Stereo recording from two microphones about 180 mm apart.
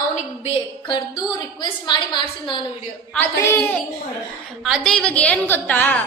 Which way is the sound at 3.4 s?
15° left (ahead or behind).